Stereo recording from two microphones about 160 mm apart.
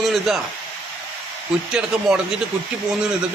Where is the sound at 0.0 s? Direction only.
Centre (ahead or behind).